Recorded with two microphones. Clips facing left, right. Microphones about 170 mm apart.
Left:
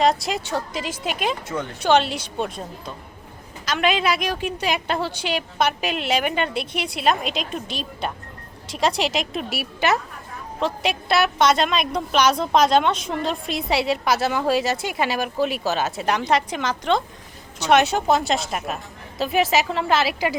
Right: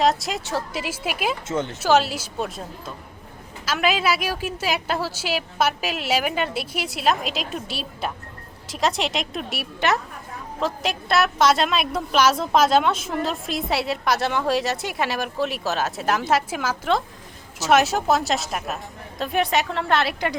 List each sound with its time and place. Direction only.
0.0 s a woman's voice: centre (ahead or behind)
1.5 s speech: 20° right (ahead or behind)
1.8 s a woman's voice: 5° right (ahead or behind)